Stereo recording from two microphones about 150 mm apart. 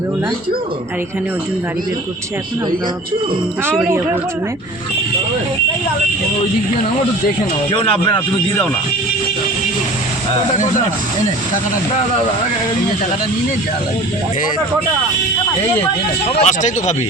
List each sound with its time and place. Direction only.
3.8 s speech: 15° right (ahead or behind)
16.4 s speech: 55° left (ahead or behind)